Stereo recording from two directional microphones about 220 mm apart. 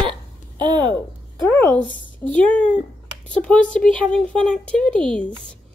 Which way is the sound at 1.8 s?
35° left (ahead or behind).